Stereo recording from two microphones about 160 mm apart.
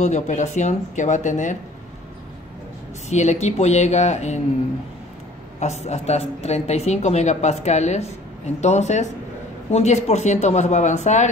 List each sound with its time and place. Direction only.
0.0 s a woman's voice: 45° left (ahead or behind)
3.1 s a woman's voice: 45° left (ahead or behind)
5.6 s a woman's voice: 45° left (ahead or behind)